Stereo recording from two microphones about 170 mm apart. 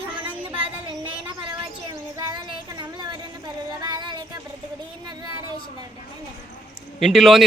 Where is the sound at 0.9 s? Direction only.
30° right (ahead or behind).